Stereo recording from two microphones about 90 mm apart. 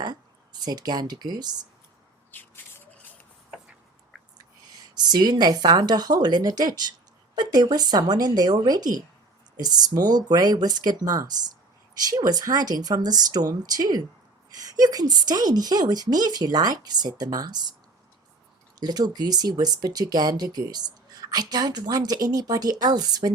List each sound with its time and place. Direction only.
0.0 s speech: 50° right (ahead or behind)
2.3 s a sound: 20° left (ahead or behind)
4.9 s speech: 50° right (ahead or behind)
18.8 s speech: 50° right (ahead or behind)